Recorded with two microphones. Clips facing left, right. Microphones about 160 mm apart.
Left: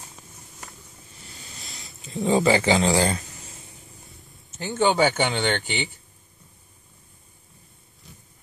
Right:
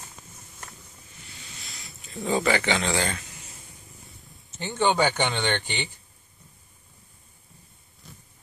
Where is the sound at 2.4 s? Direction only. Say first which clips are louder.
Left 5 dB; 30° left (ahead or behind).